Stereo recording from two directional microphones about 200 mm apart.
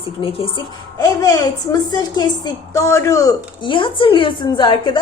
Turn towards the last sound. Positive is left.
turn(degrees=20)  # may be behind; listen again after turning